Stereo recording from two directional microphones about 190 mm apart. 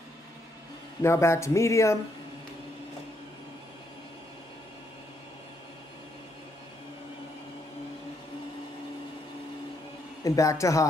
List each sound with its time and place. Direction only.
1.0 s speech: 15° left (ahead or behind)
10.2 s speech: 15° left (ahead or behind)